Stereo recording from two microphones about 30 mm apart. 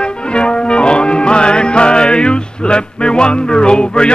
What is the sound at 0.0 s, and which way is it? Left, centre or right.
Music, left.